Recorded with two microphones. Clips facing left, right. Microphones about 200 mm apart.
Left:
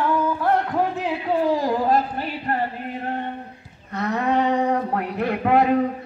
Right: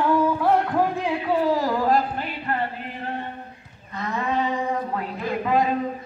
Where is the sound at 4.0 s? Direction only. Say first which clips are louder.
Left 4 dB; 70° left (ahead or behind).